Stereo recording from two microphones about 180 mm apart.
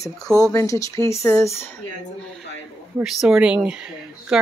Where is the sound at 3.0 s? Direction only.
5° right (ahead or behind).